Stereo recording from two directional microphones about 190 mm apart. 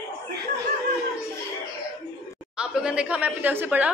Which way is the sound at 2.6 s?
5° right (ahead or behind).